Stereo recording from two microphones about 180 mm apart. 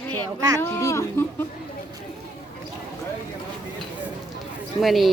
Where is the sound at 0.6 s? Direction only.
15° left (ahead or behind).